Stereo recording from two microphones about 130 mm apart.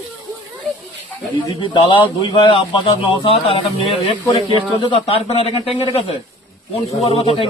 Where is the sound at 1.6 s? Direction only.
40° left (ahead or behind).